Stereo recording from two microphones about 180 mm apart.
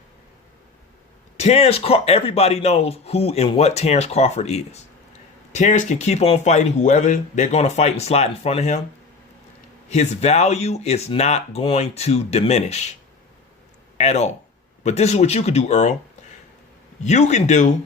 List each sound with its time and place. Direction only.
1.4 s speech: 35° left (ahead or behind)
9.9 s speech: 40° left (ahead or behind)
14.0 s speech: 40° left (ahead or behind)
17.0 s speech: 40° left (ahead or behind)